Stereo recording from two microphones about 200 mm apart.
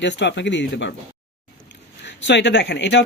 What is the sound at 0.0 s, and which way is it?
Speech, 60° left (ahead or behind).